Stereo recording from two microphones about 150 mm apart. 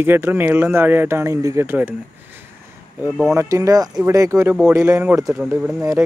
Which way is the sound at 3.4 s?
20° right (ahead or behind).